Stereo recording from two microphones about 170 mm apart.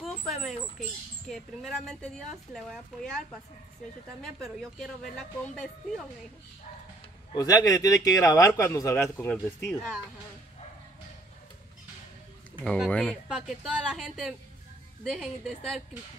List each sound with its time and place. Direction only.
0.0 s speech: centre (ahead or behind)
7.3 s a man's voice: 20° left (ahead or behind)
12.6 s speech: centre (ahead or behind)